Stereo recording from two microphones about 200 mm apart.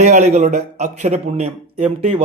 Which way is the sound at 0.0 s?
35° right (ahead or behind).